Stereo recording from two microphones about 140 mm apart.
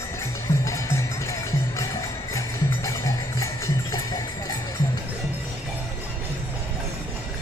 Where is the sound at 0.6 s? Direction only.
20° left (ahead or behind).